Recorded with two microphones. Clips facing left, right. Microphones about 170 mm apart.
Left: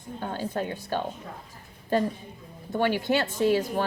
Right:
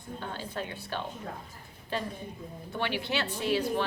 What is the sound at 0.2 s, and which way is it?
Speech, 45° left (ahead or behind).